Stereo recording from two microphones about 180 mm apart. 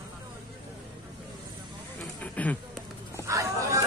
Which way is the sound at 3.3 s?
20° right (ahead or behind).